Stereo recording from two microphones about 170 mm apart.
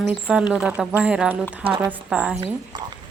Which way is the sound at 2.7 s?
25° right (ahead or behind).